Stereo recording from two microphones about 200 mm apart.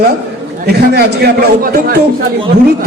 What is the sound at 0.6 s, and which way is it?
A man's voice, 50° right (ahead or behind).